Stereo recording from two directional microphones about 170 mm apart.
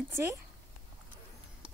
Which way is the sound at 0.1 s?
15° right (ahead or behind).